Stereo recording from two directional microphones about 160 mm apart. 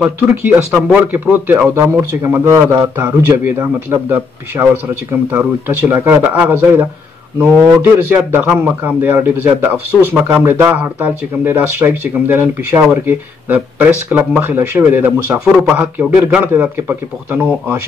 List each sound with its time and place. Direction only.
0.0 s speech: 10° right (ahead or behind)
8.1 s speech: 15° right (ahead or behind)